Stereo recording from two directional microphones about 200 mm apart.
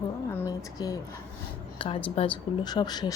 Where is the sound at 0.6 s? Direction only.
20° left (ahead or behind).